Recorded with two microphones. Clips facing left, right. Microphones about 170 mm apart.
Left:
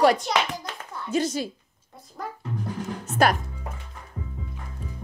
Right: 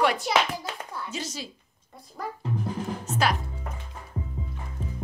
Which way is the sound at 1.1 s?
55° left (ahead or behind).